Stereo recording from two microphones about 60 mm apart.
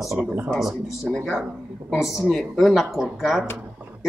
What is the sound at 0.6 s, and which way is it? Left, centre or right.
Speech, centre.